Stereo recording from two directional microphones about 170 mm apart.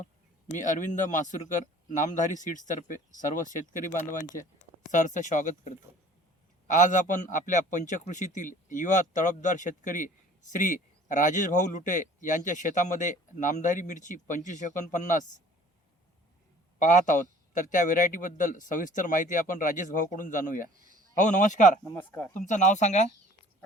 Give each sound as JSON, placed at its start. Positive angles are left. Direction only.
{"t": 0.5, "sound": "speech", "side_deg": 50}
{"t": 16.7, "sound": "speech", "side_deg": 45}
{"t": 21.8, "sound": "speech", "side_deg": 15}
{"t": 22.4, "sound": "speech", "side_deg": 45}